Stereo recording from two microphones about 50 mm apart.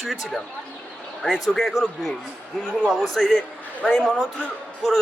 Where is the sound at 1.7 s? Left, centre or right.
Centre.